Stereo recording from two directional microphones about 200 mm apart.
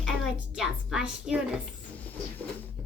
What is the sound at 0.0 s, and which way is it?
A woman's voice, centre (ahead or behind).